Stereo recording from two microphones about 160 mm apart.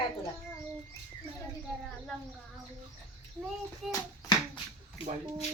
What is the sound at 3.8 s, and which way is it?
Speech, centre (ahead or behind).